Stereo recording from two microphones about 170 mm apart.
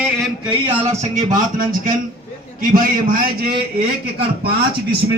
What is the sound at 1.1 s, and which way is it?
Speech, 50° right (ahead or behind).